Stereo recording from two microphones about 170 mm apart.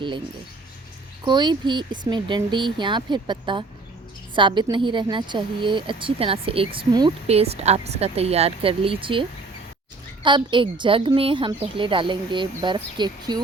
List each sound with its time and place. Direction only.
1.2 s a woman's voice: 25° right (ahead or behind)
10.2 s a woman's voice: 30° right (ahead or behind)